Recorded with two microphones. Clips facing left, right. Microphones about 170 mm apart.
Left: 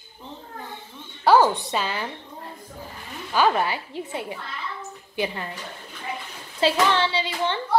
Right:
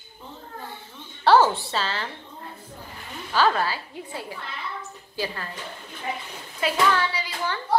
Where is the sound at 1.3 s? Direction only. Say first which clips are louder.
Left 1 dB; 15° left (ahead or behind).